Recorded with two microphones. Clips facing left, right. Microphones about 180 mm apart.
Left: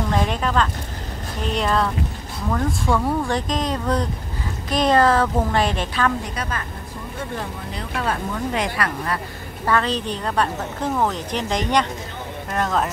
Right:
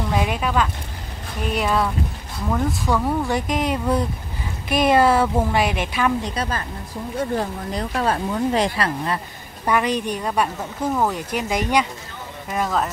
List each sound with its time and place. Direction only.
0.1 s a woman's voice: 10° right (ahead or behind)
7.3 s speech: 35° right (ahead or behind)
9.7 s a woman's voice: 15° right (ahead or behind)